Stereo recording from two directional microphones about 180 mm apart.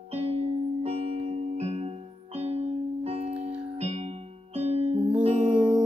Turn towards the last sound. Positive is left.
turn(degrees=-35)  # may be behind; listen again after turning